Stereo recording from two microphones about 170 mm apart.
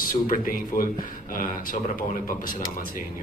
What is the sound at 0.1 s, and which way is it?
Speech, 55° left (ahead or behind).